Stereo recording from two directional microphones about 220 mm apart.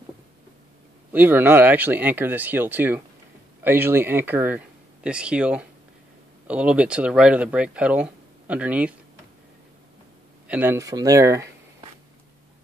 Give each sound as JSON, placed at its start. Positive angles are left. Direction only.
{"t": 1.1, "sound": "speech", "side_deg": -10}
{"t": 10.5, "sound": "speech", "side_deg": -10}